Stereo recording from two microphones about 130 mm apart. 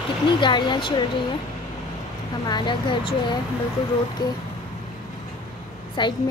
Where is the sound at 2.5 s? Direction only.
35° left (ahead or behind).